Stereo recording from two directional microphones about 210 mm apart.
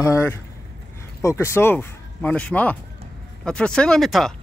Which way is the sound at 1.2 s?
15° left (ahead or behind).